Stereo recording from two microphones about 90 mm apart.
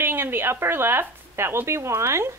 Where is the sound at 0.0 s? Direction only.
25° right (ahead or behind).